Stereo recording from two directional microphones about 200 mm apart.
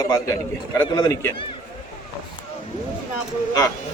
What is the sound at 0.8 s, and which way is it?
Speech, 15° left (ahead or behind).